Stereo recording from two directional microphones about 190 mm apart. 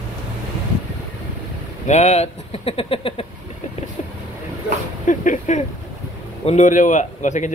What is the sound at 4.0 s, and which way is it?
Vehicle, 35° left (ahead or behind).